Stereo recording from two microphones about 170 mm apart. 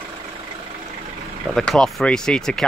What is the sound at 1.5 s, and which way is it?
Speech, 5° left (ahead or behind).